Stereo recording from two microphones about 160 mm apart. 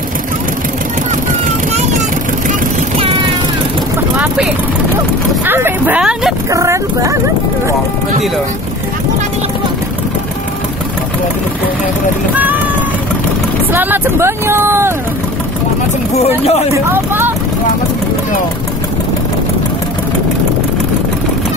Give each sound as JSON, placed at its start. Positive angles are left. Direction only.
{"t": 5.4, "sound": "vehicle", "side_deg": -15}
{"t": 6.5, "sound": "speech", "side_deg": -20}
{"t": 13.7, "sound": "speech", "side_deg": -10}
{"t": 16.2, "sound": "speech", "side_deg": 40}
{"t": 16.7, "sound": "speech", "side_deg": -15}